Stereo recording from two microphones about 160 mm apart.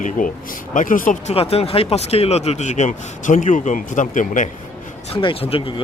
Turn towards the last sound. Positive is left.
turn(degrees=35)  # may be behind; listen again after turning